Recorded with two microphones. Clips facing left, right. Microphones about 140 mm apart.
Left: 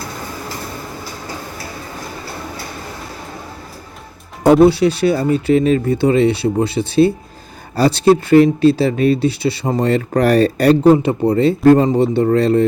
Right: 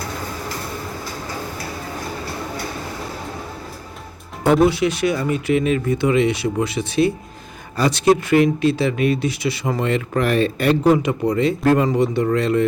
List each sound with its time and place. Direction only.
4.6 s speech: 30° left (ahead or behind)